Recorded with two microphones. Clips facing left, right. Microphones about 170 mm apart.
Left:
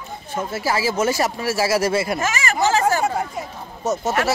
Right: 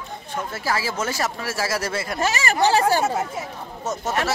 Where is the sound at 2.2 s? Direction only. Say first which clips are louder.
Even; 35° right (ahead or behind).